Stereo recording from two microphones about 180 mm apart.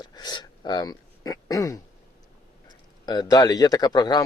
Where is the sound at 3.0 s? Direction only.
20° left (ahead or behind).